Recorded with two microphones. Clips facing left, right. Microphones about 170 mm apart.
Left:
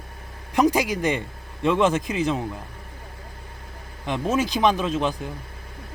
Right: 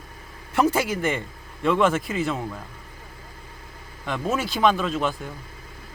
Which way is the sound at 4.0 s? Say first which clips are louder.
Left 3 dB; 20° left (ahead or behind).